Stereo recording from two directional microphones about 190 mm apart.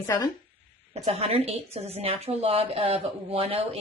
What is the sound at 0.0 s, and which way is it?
Speech, 15° left (ahead or behind).